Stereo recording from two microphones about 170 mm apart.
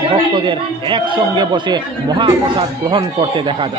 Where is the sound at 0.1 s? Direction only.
30° right (ahead or behind).